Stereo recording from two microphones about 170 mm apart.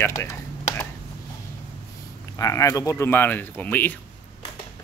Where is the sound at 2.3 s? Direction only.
20° left (ahead or behind).